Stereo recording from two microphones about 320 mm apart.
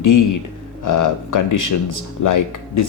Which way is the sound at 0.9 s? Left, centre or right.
Left.